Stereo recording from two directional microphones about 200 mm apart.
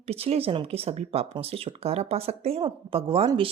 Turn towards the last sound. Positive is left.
turn(degrees=-25)  # may be behind; listen again after turning